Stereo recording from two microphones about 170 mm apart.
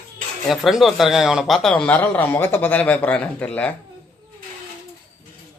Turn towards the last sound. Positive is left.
turn(degrees=10)  # may be behind; listen again after turning